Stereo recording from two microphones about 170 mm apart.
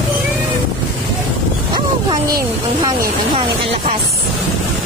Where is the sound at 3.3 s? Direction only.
35° right (ahead or behind).